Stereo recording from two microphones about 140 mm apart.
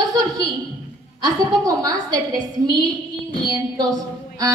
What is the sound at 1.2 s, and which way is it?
A woman's voice, 25° right (ahead or behind).